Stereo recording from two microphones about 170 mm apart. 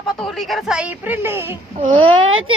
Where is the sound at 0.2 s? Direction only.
Centre (ahead or behind).